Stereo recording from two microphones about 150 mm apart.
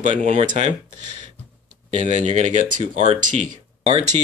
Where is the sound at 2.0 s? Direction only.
50° right (ahead or behind).